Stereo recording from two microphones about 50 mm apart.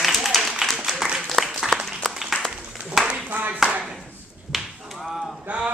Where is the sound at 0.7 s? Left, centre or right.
Centre.